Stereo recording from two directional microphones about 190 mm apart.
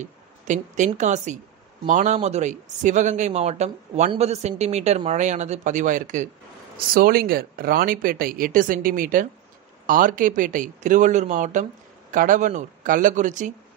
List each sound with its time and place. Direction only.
0.0 s speech: 40° right (ahead or behind)